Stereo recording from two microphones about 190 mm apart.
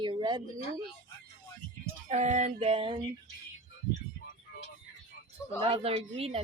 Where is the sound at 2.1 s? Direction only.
40° right (ahead or behind).